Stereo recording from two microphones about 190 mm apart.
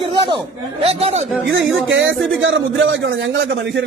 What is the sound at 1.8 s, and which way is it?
A man's voice, 80° right.